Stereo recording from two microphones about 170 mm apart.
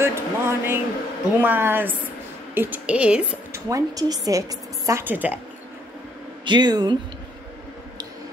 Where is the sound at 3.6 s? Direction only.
20° right (ahead or behind).